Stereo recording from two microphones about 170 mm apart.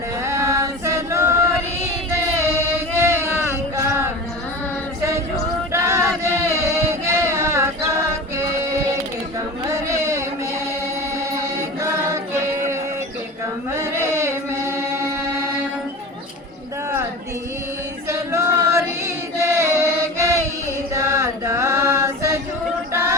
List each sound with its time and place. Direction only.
0.3 s choir: 15° right (ahead or behind)
2.1 s singing: 15° right (ahead or behind)
5.7 s a sound: 15° right (ahead or behind)
9.6 s carnatic music: 15° right (ahead or behind)
11.8 s choir: 20° right (ahead or behind)
13.7 s carnatic music: 15° right (ahead or behind)
18.1 s female singing: 15° right (ahead or behind)
20.9 s chant: 15° right (ahead or behind)
22.9 s a sound: 15° right (ahead or behind)